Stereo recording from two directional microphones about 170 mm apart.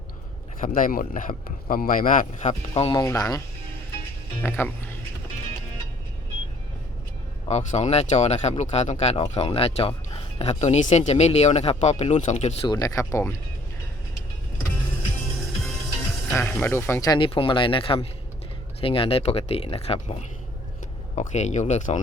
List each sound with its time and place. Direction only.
0.6 s speech: 55° left (ahead or behind)
2.9 s speech: 20° left (ahead or behind)
4.4 s speech: 15° left (ahead or behind)
7.4 s speech: 40° left (ahead or behind)
12.6 s speech: 20° left (ahead or behind)
16.3 s speech: 10° left (ahead or behind); by 22.0 s 45° left (ahead or behind)